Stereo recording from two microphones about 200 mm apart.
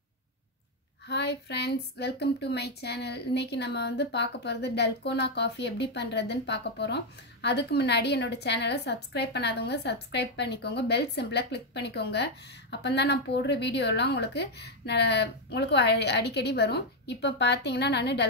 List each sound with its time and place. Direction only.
1.0 s speech: 55° left (ahead or behind)